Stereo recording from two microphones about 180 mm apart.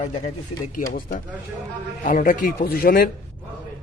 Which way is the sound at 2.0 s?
50° left (ahead or behind).